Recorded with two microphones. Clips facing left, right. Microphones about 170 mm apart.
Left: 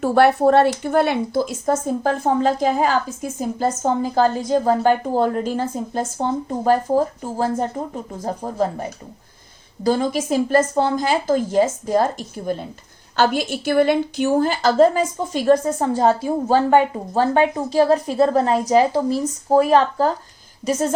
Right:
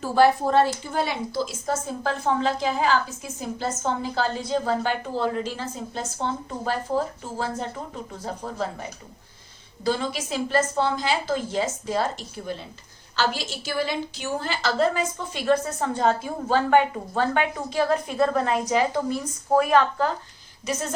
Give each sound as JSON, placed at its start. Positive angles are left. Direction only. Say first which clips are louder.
{"t": 0.0, "sound": "a woman's voice", "louder": "left 5 dB", "side_deg": 65}
{"t": 20.7, "sound": "speech", "louder": "left 8 dB", "side_deg": 45}